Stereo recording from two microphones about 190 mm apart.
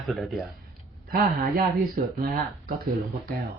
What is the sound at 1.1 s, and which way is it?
Speech, 55° right (ahead or behind).